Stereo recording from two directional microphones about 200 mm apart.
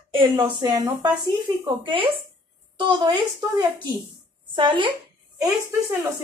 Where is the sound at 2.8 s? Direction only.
20° right (ahead or behind).